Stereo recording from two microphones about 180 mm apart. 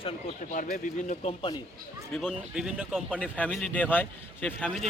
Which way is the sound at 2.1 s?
Centre (ahead or behind).